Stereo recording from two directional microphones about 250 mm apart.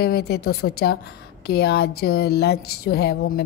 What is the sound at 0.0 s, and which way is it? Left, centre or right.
A woman's voice, left.